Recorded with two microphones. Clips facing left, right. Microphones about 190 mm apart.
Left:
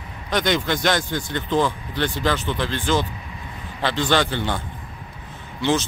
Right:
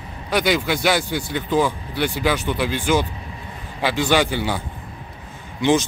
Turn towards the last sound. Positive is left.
turn(degrees=-15)  # may be behind; listen again after turning